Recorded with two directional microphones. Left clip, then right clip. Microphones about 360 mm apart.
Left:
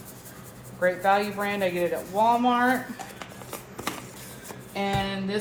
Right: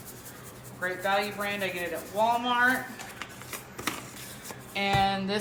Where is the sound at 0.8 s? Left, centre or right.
Centre.